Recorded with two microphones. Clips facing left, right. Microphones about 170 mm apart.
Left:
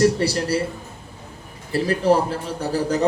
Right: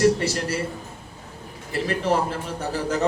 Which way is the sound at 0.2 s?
30° left (ahead or behind).